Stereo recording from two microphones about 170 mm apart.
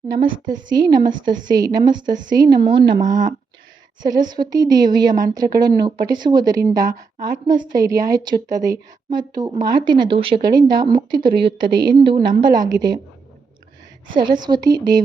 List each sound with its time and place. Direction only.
0.4 s a woman's voice: 25° right (ahead or behind)
1.2 s a woman's voice: 50° right (ahead or behind)
1.5 s a woman's voice: 25° right (ahead or behind)
1.9 s a woman's voice: 50° right (ahead or behind)
2.3 s a woman's voice: 25° right (ahead or behind)
4.3 s a woman's voice: 25° right (ahead or behind)
14.2 s a woman's voice: 25° right (ahead or behind)